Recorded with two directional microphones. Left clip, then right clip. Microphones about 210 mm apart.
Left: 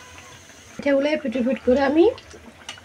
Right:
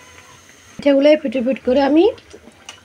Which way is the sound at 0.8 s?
35° right (ahead or behind).